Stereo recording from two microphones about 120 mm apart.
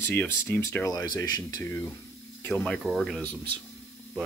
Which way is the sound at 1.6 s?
20° left (ahead or behind).